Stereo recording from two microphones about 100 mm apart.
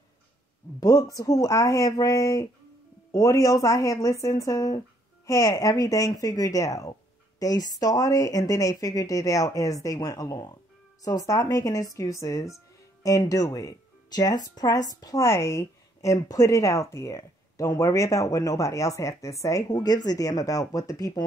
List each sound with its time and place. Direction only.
0.7 s a woman's voice: 35° left (ahead or behind)
15.2 s a woman's voice: 30° left (ahead or behind)